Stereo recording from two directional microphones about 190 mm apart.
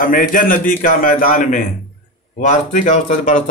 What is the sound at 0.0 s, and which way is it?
A man's voice, 45° left (ahead or behind).